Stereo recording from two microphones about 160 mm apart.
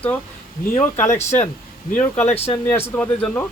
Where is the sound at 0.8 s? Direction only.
15° left (ahead or behind).